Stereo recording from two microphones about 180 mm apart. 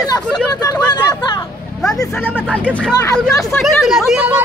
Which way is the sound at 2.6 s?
5° left (ahead or behind).